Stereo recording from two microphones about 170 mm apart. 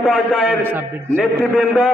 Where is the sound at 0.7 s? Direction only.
10° right (ahead or behind).